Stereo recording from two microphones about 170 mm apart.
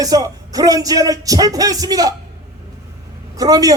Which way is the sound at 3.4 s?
20° right (ahead or behind).